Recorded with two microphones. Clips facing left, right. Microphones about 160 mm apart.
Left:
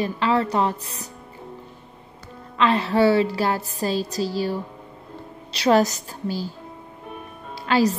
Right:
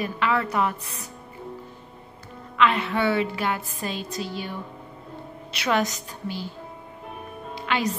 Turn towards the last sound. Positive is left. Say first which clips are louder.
# left 6 dB
turn(degrees=35)  # may be behind; listen again after turning